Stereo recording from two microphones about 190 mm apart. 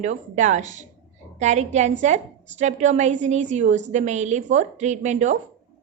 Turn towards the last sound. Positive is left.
turn(degrees=-40)  # may be behind; listen again after turning